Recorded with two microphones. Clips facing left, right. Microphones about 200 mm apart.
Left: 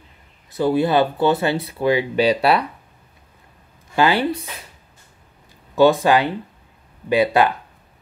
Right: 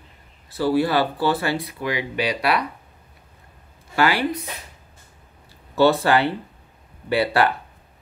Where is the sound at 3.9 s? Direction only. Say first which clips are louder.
Left 3 dB; 25° left (ahead or behind).